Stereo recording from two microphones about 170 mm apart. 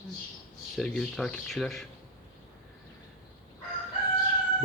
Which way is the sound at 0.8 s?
5° left (ahead or behind).